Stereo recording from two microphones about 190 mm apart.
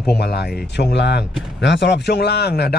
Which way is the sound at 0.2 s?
60° left (ahead or behind).